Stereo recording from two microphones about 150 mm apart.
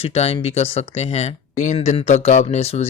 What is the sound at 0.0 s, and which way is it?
Speech, 45° left (ahead or behind).